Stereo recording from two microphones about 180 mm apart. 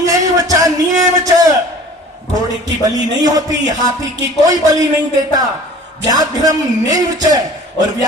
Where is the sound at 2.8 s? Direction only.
20° right (ahead or behind).